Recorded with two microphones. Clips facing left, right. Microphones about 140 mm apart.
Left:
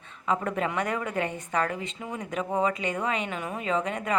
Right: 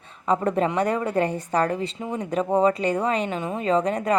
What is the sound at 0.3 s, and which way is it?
A woman's voice, 35° right (ahead or behind).